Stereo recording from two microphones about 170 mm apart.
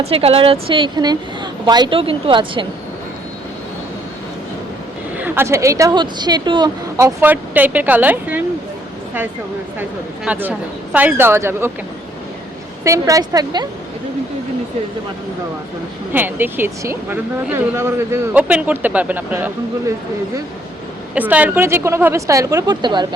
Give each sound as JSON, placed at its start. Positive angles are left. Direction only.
{"t": 0.0, "sound": "a woman's voice", "side_deg": -35}
{"t": 5.1, "sound": "speech", "side_deg": -10}
{"t": 10.2, "sound": "speech", "side_deg": -10}
{"t": 12.8, "sound": "a woman's voice", "side_deg": -20}
{"t": 16.1, "sound": "speech", "side_deg": -10}
{"t": 21.2, "sound": "speech", "side_deg": -10}